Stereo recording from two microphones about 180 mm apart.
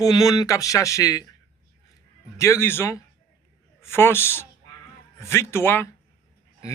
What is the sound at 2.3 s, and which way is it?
Speech, 15° left (ahead or behind).